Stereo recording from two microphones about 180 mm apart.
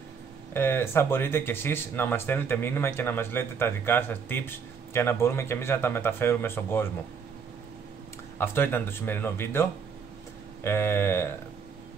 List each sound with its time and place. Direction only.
0.5 s speech: 10° left (ahead or behind)
8.4 s speech: 10° left (ahead or behind)